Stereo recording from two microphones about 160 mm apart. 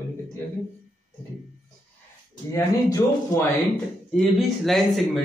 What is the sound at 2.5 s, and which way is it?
Speech, 20° left (ahead or behind).